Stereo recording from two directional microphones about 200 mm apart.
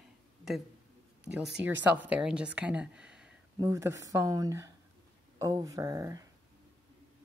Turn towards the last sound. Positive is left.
turn(degrees=-15)  # may be behind; listen again after turning